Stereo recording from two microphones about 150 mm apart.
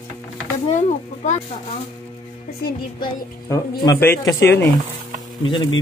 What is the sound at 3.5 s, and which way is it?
Speech, 20° left (ahead or behind).